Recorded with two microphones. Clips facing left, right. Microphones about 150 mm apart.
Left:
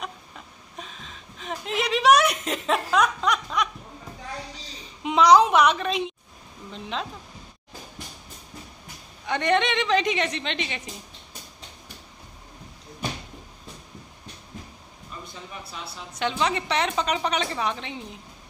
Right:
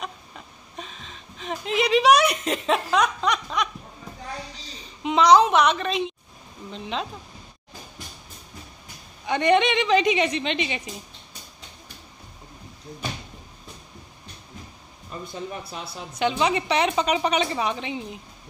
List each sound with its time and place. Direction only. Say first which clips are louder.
0.7 s a sound: right 2 dB; centre (ahead or behind)
5.0 s a woman's voice: even; 5° left (ahead or behind)
9.2 s a woman's voice: right 3 dB; 5° right (ahead or behind)
15.1 s speech: right 5 dB; 45° right (ahead or behind)
16.2 s a woman's voice: right 3 dB; 5° right (ahead or behind)